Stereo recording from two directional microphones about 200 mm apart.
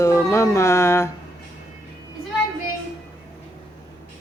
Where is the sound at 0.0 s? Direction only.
15° left (ahead or behind).